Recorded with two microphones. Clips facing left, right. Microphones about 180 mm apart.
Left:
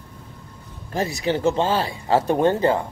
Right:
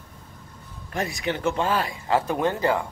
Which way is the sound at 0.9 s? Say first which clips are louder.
Left 5 dB; 30° left (ahead or behind).